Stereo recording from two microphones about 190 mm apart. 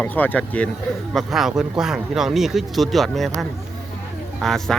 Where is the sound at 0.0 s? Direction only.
10° left (ahead or behind).